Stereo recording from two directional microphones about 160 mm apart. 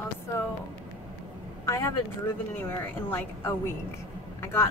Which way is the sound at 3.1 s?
15° left (ahead or behind).